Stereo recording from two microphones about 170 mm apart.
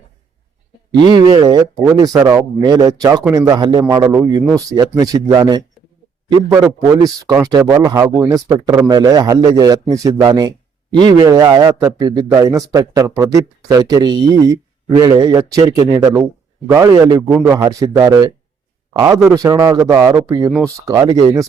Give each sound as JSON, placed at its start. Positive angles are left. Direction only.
{"t": 1.0, "sound": "speech", "side_deg": -25}